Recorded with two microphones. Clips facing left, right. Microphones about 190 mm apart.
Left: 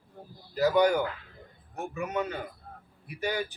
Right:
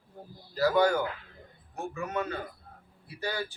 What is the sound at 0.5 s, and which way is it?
A man's voice, 15° left (ahead or behind).